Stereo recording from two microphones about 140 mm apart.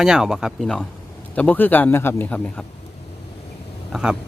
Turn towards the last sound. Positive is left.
turn(degrees=0)  # may be behind; listen again after turning